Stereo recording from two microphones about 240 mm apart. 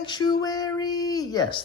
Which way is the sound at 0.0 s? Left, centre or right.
Centre.